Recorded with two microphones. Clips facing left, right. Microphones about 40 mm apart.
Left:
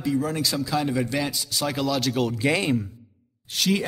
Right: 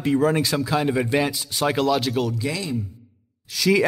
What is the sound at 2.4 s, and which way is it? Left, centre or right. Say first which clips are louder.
Speech: left 4 dB; left.